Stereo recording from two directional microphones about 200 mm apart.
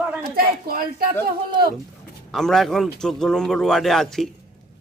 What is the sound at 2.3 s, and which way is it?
A man's voice, centre (ahead or behind).